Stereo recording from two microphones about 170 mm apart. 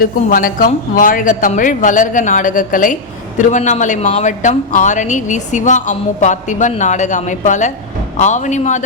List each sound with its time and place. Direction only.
0.0 s a man's voice: 55° left (ahead or behind)